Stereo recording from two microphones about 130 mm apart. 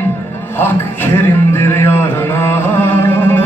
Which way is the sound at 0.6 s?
15° left (ahead or behind).